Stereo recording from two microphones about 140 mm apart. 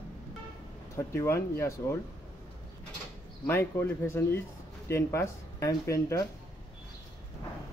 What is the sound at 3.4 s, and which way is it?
Speech, 15° left (ahead or behind).